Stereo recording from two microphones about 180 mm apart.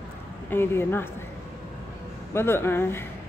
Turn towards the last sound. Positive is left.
turn(degrees=10)  # may be behind; listen again after turning